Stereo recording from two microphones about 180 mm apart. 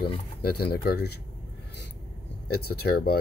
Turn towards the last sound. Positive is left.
turn(degrees=60)  # may be behind; listen again after turning